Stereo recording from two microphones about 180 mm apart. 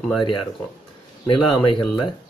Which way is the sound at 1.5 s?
30° left (ahead or behind).